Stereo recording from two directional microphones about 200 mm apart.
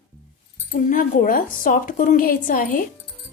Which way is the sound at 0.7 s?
40° left (ahead or behind).